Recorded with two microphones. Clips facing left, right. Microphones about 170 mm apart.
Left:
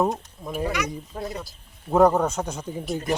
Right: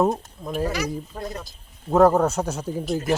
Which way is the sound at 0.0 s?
Centre (ahead or behind).